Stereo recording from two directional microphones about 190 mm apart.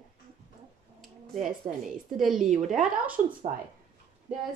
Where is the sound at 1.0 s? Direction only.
Centre (ahead or behind).